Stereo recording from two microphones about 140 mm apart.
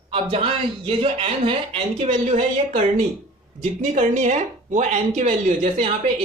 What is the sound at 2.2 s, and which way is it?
Speech, 55° right (ahead or behind).